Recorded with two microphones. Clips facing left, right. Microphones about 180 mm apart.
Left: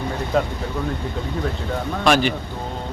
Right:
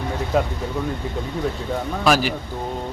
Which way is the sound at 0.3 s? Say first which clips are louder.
Even; 5° right (ahead or behind).